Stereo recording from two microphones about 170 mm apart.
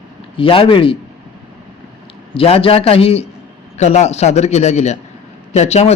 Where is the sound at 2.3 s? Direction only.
35° left (ahead or behind).